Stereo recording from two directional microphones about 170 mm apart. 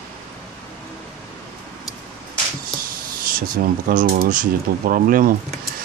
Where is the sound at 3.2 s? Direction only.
55° right (ahead or behind).